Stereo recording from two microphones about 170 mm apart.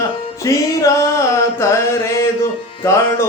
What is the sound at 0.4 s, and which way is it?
Music, 20° left (ahead or behind).